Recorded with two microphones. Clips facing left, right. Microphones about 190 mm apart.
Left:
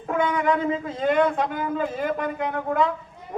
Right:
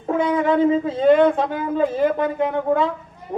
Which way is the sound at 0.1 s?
30° right (ahead or behind).